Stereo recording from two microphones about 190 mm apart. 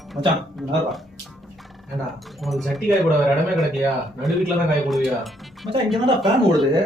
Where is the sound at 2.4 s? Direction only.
Centre (ahead or behind).